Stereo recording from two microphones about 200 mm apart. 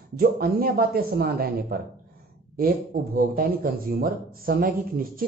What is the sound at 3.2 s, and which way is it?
Speech, 45° right (ahead or behind).